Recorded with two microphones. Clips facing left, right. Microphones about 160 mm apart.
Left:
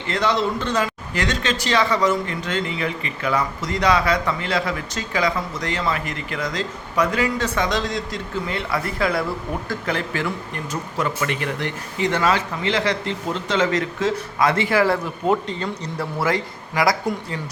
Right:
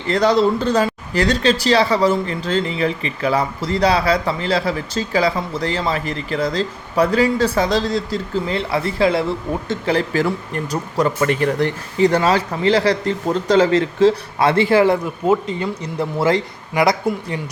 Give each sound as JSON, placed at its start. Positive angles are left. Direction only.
{"t": 0.1, "sound": "speech", "side_deg": -35}
{"t": 15.5, "sound": "speech", "side_deg": -10}
{"t": 16.0, "sound": "speech", "side_deg": -25}